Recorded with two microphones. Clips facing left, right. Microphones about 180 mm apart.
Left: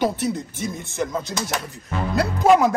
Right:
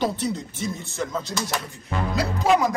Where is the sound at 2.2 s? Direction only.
60° left (ahead or behind).